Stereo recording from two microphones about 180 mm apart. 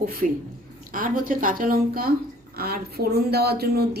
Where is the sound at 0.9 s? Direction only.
50° right (ahead or behind).